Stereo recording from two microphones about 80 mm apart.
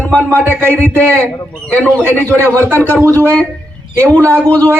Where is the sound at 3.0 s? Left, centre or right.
Right.